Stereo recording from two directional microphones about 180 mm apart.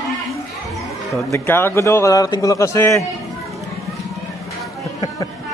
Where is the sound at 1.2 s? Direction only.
15° left (ahead or behind).